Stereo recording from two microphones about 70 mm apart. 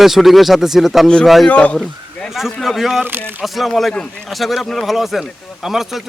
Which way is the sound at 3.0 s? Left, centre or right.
Right.